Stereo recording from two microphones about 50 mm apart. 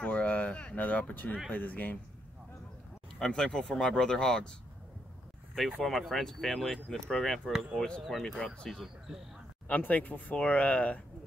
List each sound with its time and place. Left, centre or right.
0.0 s speech: left
3.2 s speech: centre
5.9 s speech: centre
9.7 s speech: left